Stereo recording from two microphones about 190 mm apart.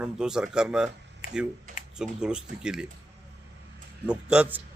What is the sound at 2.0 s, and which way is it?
Speech, 5° right (ahead or behind).